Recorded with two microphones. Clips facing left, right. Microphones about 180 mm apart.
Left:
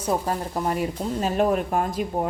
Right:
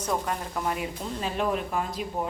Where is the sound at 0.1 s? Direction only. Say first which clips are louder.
Left 5 dB; 35° left (ahead or behind).